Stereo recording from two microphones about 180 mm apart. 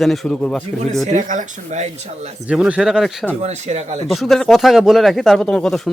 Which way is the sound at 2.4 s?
5° right (ahead or behind).